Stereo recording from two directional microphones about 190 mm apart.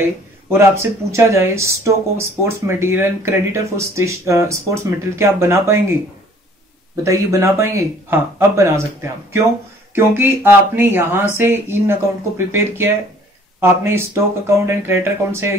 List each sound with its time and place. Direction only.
0.0 s speech: 15° right (ahead or behind)
7.0 s speech: 15° right (ahead or behind)
9.9 s speech: 10° right (ahead or behind)